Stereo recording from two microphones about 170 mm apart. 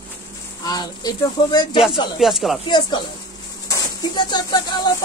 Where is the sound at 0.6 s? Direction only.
25° left (ahead or behind).